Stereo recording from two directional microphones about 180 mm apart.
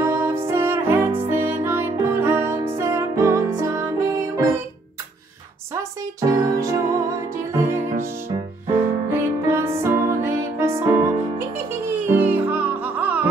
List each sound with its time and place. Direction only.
0.0 s music: 15° right (ahead or behind)
5.8 s music: 20° right (ahead or behind)
12.1 s music: 10° right (ahead or behind)